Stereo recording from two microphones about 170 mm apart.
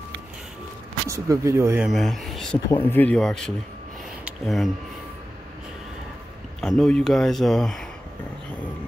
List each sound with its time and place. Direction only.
1.0 s speech: 20° right (ahead or behind)
1.9 s speech: centre (ahead or behind)
4.2 s a sound: centre (ahead or behind)
6.6 s speech: 5° left (ahead or behind)